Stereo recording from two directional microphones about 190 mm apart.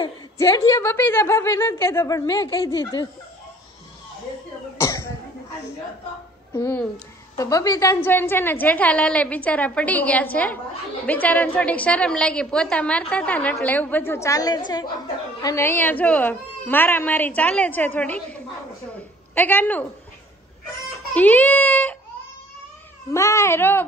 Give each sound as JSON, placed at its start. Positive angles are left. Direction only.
{"t": 0.0, "sound": "a woman's voice", "side_deg": 20}
{"t": 4.7, "sound": "cough", "side_deg": 15}
{"t": 6.5, "sound": "a woman's voice", "side_deg": 10}
{"t": 21.1, "sound": "a woman's voice", "side_deg": 10}
{"t": 23.1, "sound": "a woman's voice", "side_deg": 15}